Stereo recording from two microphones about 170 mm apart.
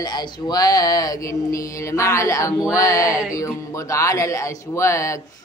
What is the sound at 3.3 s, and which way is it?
Speech, 20° left (ahead or behind).